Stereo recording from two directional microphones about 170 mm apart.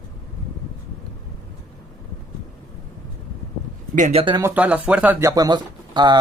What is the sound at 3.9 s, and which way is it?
Speech, 40° right (ahead or behind).